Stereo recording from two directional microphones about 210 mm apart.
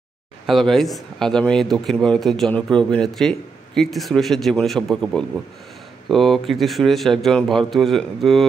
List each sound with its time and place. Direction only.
0.5 s a man's voice: centre (ahead or behind)